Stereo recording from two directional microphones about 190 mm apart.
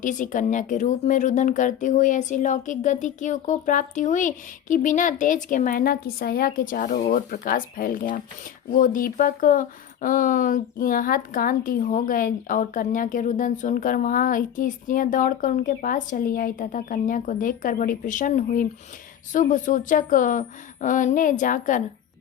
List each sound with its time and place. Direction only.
0.0 s speech: 40° left (ahead or behind)